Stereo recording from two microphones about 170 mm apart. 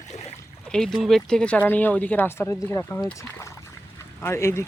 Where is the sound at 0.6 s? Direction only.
5° left (ahead or behind).